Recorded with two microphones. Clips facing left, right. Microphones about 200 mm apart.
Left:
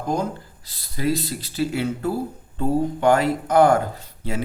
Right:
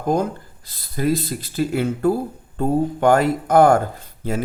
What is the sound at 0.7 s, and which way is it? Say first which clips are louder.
Speech: right 3 dB; 50° right (ahead or behind).